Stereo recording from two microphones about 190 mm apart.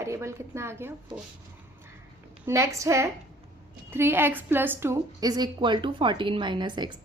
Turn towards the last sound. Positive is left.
turn(degrees=-25)  # may be behind; listen again after turning